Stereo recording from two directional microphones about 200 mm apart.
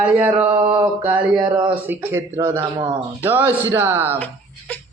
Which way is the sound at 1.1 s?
5° right (ahead or behind).